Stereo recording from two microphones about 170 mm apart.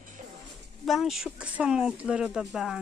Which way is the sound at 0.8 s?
Centre (ahead or behind).